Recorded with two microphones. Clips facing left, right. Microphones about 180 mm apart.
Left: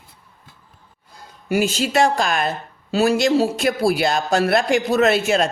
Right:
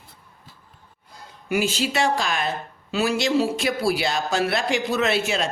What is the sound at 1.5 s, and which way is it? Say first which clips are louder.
Speech: left 4 dB; 45° left (ahead or behind).